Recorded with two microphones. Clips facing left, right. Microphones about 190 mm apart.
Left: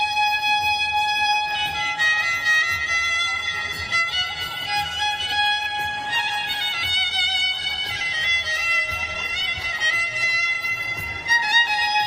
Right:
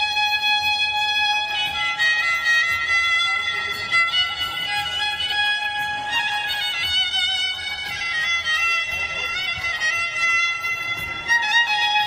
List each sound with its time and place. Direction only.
1.1 s music: 40° left (ahead or behind)
3.9 s violin: 45° left (ahead or behind)
10.2 s music: 30° left (ahead or behind)